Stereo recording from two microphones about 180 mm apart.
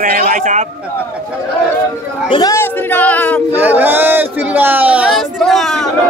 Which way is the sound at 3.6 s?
10° right (ahead or behind).